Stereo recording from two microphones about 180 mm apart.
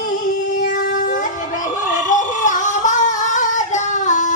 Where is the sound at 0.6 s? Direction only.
50° left (ahead or behind).